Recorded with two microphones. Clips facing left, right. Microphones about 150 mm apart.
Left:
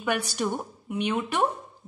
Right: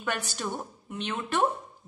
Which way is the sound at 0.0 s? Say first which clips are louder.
Left 5 dB; 15° left (ahead or behind).